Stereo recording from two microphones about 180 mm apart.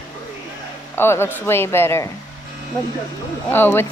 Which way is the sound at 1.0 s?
15° left (ahead or behind).